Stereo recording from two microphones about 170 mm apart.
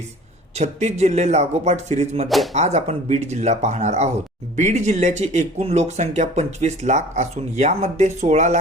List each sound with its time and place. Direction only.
0.5 s speech: 40° right (ahead or behind)